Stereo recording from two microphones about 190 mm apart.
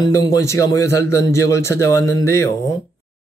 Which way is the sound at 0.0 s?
15° left (ahead or behind).